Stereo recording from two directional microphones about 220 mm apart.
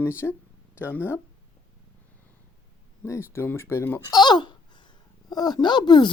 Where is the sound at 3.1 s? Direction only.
10° left (ahead or behind).